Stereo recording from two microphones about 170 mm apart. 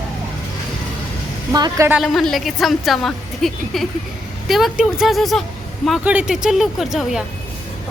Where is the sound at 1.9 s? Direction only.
Centre (ahead or behind).